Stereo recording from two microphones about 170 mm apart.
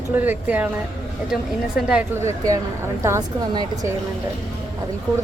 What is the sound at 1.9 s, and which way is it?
A woman's voice, 10° right (ahead or behind).